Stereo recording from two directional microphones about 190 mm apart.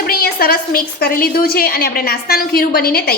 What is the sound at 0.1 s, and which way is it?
A woman's voice, 50° left (ahead or behind).